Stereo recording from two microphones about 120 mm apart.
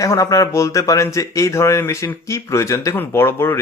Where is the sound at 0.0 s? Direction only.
30° left (ahead or behind).